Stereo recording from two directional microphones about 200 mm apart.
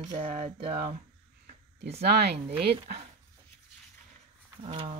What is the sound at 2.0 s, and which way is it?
Speech, 55° right (ahead or behind).